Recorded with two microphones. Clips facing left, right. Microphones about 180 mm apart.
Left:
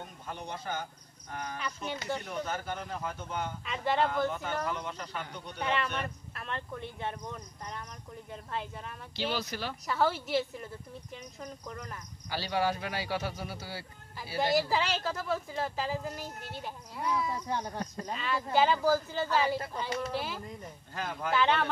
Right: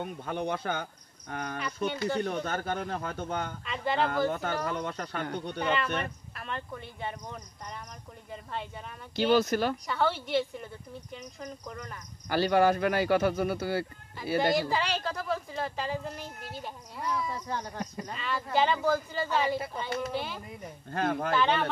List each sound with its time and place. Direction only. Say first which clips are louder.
0.0 s speech: right 9 dB; 65° right (ahead or behind)
3.6 s speech: left 1 dB; centre (ahead or behind)
4.3 s speech: right 3 dB; 60° right (ahead or behind)
5.6 s speech: right 2 dB; centre (ahead or behind)
8.3 s speech: right 1 dB; centre (ahead or behind)
9.1 s speech: right 10 dB; 50° right (ahead or behind)
9.8 s speech: even; centre (ahead or behind)
12.3 s speech: right 7 dB; 55° right (ahead or behind)
14.4 s speech: left 1 dB; centre (ahead or behind)
20.9 s speech: right 8 dB; 55° right (ahead or behind)
21.4 s speech: left 1 dB; centre (ahead or behind)